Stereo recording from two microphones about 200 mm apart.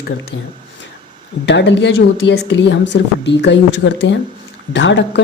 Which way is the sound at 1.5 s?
60° left (ahead or behind).